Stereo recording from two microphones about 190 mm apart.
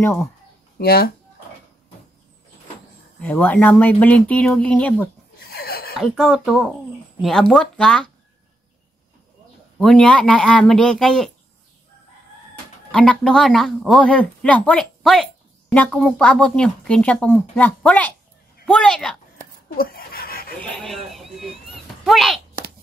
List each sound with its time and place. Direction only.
0.0 s speech: 15° left (ahead or behind)
0.7 s speech: 55° left (ahead or behind)
3.2 s speech: 10° left (ahead or behind)
5.4 s a sound: 55° left (ahead or behind)
5.9 s speech: centre (ahead or behind)
9.8 s speech: 5° left (ahead or behind)
12.9 s speech: 5° left (ahead or behind)
19.7 s a sound: 50° left (ahead or behind)
20.5 s a sound: 5° left (ahead or behind)
22.0 s speech: centre (ahead or behind)